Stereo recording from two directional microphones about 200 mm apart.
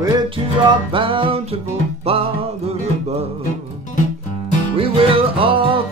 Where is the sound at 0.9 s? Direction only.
25° right (ahead or behind).